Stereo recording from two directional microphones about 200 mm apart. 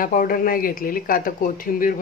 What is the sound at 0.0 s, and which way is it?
Speech, 45° left (ahead or behind).